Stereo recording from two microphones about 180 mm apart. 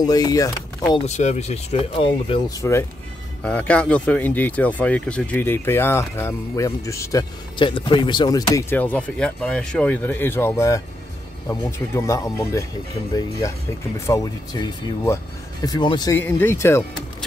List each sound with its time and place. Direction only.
0.0 s speech: 20° left (ahead or behind)
1.0 s speech: 40° left (ahead or behind)
2.6 s speech: 15° left (ahead or behind)
13.9 s speech: 15° left (ahead or behind)
16.2 s speech: 10° left (ahead or behind)